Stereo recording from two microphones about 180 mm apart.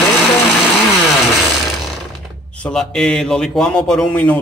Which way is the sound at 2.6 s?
5° left (ahead or behind).